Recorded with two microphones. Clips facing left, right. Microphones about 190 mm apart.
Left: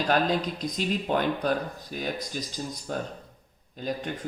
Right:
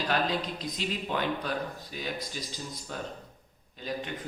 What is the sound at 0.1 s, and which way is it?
A man's voice, 45° left (ahead or behind).